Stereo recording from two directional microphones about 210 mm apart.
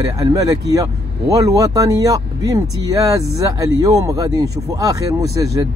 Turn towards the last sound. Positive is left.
turn(degrees=-15)  # may be behind; listen again after turning